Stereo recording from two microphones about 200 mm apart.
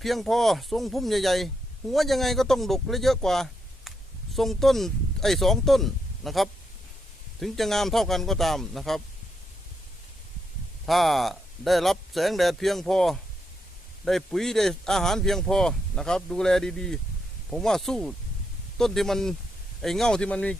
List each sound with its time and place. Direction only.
0.0 s speech: centre (ahead or behind)
10.8 s speech: centre (ahead or behind)